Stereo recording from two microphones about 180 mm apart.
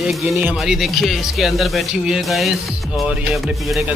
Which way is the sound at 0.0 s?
Centre (ahead or behind).